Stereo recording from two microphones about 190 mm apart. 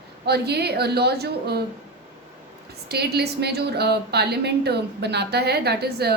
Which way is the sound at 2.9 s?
60° right (ahead or behind).